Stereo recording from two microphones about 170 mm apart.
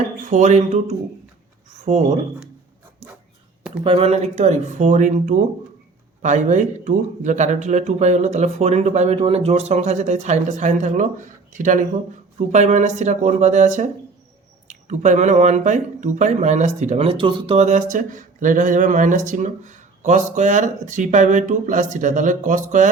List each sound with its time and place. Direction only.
0.3 s speech: 45° right (ahead or behind)
3.0 s dog: 45° right (ahead or behind)
3.8 s speech: 35° right (ahead or behind)